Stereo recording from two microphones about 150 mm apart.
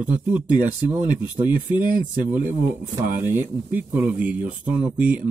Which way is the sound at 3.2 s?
15° right (ahead or behind).